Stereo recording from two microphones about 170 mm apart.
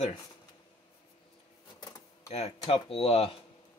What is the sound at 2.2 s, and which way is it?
Speech, 35° left (ahead or behind).